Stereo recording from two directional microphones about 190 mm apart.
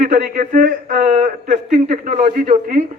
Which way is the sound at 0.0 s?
45° right (ahead or behind).